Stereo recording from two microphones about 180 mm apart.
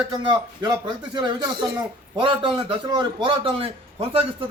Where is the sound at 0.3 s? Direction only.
25° right (ahead or behind).